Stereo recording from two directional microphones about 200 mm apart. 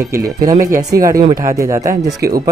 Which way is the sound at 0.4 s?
15° right (ahead or behind).